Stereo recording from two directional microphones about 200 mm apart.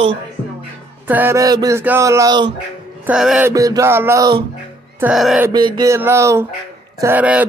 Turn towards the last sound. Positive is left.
turn(degrees=-5)  # may be behind; listen again after turning